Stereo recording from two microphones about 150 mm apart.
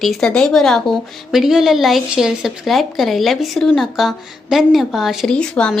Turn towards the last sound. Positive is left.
turn(degrees=5)  # may be behind; listen again after turning